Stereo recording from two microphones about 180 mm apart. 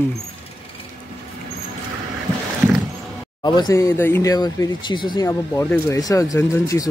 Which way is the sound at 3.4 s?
25° left (ahead or behind).